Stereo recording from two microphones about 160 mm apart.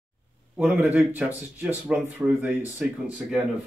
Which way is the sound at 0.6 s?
10° right (ahead or behind).